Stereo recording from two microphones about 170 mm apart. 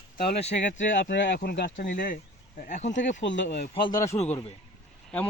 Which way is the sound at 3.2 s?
90° left.